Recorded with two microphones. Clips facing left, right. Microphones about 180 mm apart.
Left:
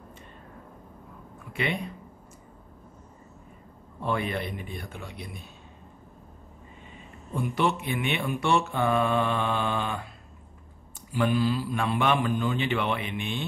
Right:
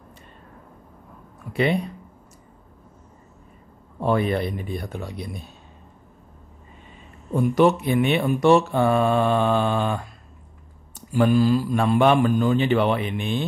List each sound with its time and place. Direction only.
1.5 s speech: 35° right (ahead or behind)
4.0 s speech: 40° right (ahead or behind)
7.3 s speech: 40° right (ahead or behind)
11.0 s speech: 45° right (ahead or behind)